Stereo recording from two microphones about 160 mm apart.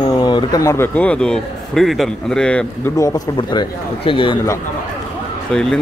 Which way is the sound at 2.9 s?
20° left (ahead or behind).